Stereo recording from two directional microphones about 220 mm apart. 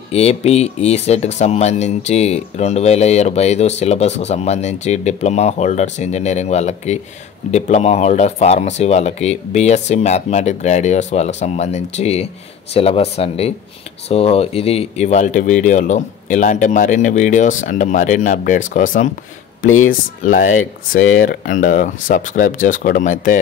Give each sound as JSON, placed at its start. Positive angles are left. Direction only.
{"t": 0.1, "sound": "speech", "side_deg": 30}
{"t": 19.6, "sound": "speech", "side_deg": 65}
{"t": 19.9, "sound": "speech", "side_deg": 35}